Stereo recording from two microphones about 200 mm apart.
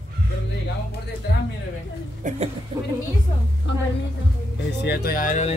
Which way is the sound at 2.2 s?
40° right (ahead or behind).